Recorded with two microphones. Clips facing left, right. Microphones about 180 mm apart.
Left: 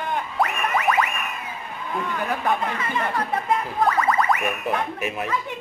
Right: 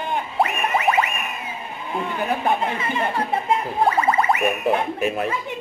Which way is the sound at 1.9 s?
25° right (ahead or behind).